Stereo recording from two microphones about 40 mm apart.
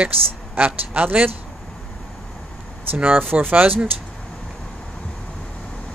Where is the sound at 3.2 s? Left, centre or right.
Right.